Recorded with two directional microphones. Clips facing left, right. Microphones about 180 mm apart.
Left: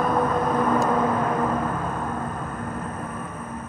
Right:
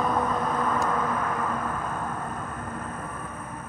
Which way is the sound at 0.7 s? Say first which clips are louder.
Left 6 dB; 20° left (ahead or behind).